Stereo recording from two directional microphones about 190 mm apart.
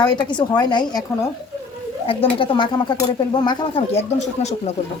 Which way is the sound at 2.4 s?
25° left (ahead or behind).